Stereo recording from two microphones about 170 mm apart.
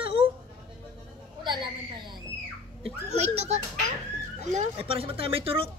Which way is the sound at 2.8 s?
40° right (ahead or behind).